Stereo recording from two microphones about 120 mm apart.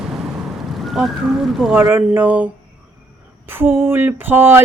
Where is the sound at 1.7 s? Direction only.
15° right (ahead or behind).